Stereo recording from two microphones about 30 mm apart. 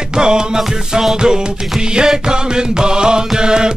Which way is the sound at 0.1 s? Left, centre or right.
Right.